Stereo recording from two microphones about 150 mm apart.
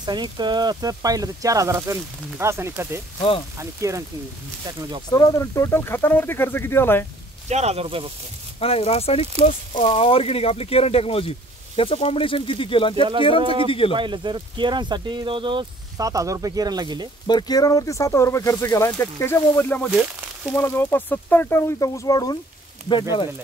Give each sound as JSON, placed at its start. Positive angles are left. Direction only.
{"t": 0.0, "sound": "speech", "side_deg": -30}
{"t": 3.2, "sound": "speech", "side_deg": 35}
{"t": 3.5, "sound": "speech", "side_deg": -20}
{"t": 5.1, "sound": "speech", "side_deg": 25}
{"t": 7.4, "sound": "speech", "side_deg": -45}
{"t": 8.5, "sound": "speech", "side_deg": 40}
{"t": 13.4, "sound": "speech", "side_deg": -35}
{"t": 13.7, "sound": "speech", "side_deg": 35}
{"t": 13.9, "sound": "speech", "side_deg": -30}
{"t": 16.1, "sound": "speech", "side_deg": -20}
{"t": 17.3, "sound": "speech", "side_deg": 25}
{"t": 19.9, "sound": "speech", "side_deg": -5}
{"t": 20.5, "sound": "speech", "side_deg": 15}